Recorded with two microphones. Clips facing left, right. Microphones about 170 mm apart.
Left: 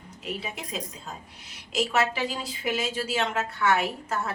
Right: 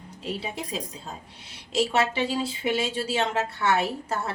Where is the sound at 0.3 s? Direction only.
30° right (ahead or behind).